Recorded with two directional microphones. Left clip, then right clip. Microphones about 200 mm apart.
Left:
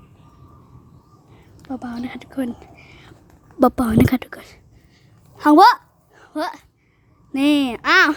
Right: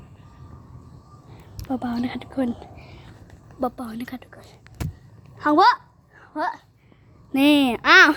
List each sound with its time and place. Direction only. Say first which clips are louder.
1.7 s speech: right 2 dB; centre (ahead or behind)
3.6 s a woman's voice: left 12 dB; 55° left (ahead or behind)
5.4 s a sound: left 5 dB; 70° left (ahead or behind)
6.3 s a child's voice: left 1 dB; 50° left (ahead or behind)
7.3 s a child's voice: right 1 dB; centre (ahead or behind)